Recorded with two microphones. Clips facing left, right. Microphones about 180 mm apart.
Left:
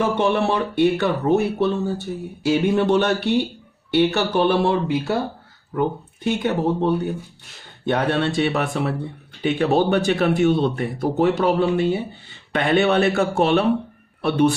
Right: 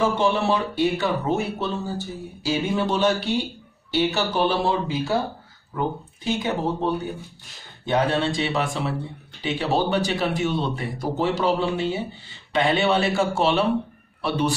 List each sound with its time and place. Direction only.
0.0 s speech: 60° left (ahead or behind)
6.2 s speech: 60° left (ahead or behind)